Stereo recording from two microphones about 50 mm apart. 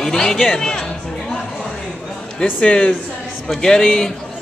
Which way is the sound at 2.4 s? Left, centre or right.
Left.